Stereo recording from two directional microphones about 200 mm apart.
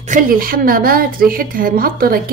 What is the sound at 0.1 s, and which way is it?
A woman's voice, 45° right (ahead or behind).